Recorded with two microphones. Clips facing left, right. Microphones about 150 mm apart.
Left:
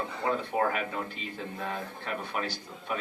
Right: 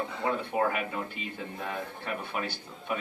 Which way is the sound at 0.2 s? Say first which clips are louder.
Even; 10° right (ahead or behind).